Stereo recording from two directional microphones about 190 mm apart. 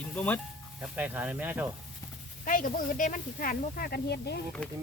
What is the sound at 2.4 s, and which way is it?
Speech, 45° left (ahead or behind).